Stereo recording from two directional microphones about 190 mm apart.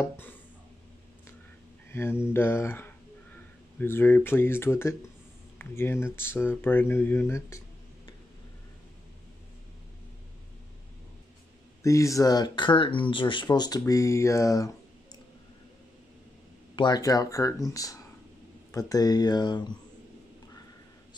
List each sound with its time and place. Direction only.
1.9 s speech: 15° left (ahead or behind)
11.8 s speech: 15° left (ahead or behind)
16.7 s speech: 20° left (ahead or behind)